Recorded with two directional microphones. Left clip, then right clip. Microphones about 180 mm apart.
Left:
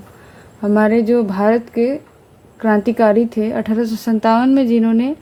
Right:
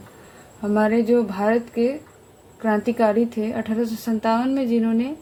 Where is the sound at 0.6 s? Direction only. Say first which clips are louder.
Left 6 dB; 55° left (ahead or behind).